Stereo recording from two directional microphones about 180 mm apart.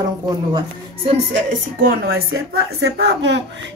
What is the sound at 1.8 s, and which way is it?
Speech, 55° right (ahead or behind).